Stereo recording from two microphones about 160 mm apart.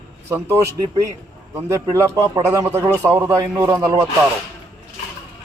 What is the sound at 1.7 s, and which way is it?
A man's voice, 20° right (ahead or behind).